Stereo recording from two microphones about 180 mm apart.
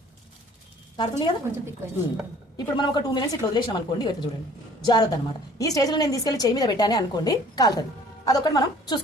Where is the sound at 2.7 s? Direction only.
25° left (ahead or behind).